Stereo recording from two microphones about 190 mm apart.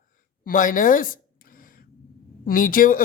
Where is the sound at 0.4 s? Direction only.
45° left (ahead or behind).